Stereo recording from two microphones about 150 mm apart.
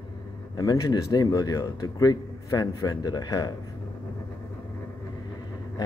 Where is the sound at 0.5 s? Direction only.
25° left (ahead or behind).